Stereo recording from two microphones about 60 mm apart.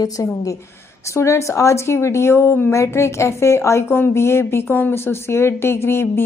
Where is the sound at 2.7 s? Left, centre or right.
Left.